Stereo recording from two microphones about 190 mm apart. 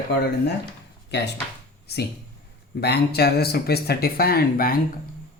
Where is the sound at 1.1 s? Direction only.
65° left (ahead or behind).